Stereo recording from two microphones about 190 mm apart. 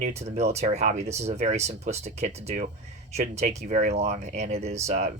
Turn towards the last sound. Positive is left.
turn(degrees=-35)  # may be behind; listen again after turning